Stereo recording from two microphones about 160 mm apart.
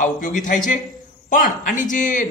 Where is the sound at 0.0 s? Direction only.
55° left (ahead or behind).